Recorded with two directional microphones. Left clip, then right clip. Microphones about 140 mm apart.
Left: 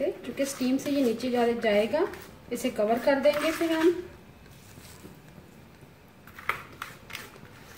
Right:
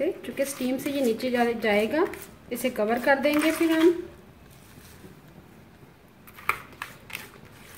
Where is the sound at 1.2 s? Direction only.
65° right (ahead or behind).